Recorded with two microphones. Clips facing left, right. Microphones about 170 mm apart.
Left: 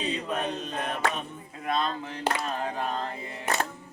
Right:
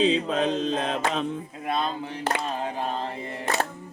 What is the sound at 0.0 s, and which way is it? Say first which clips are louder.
Mantra: right 8 dB; 90° right.